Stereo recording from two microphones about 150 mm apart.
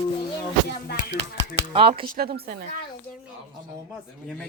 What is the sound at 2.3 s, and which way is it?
Speech, 90° right.